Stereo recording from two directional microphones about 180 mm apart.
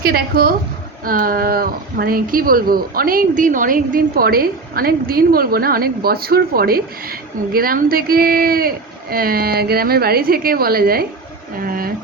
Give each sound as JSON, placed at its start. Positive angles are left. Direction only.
{"t": 0.0, "sound": "speech", "side_deg": -55}